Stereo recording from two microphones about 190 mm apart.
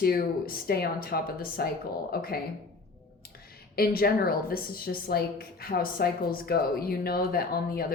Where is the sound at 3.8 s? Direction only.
55° left (ahead or behind).